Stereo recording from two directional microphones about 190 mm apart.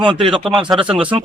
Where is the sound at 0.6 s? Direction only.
5° right (ahead or behind).